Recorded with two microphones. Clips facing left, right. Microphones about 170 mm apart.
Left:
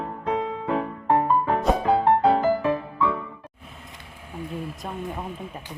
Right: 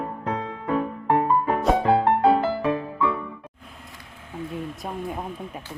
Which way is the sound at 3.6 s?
Centre (ahead or behind).